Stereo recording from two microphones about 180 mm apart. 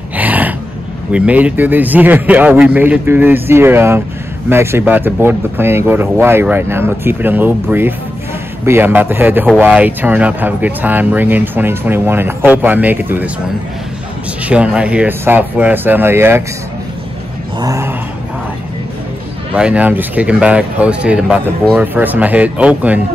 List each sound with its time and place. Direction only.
0.2 s gasp: 10° right (ahead or behind)
1.1 s speech: 5° right (ahead or behind)
14.4 s speech: 5° right (ahead or behind)
17.6 s speech: 15° right (ahead or behind)
19.5 s speech: 5° right (ahead or behind)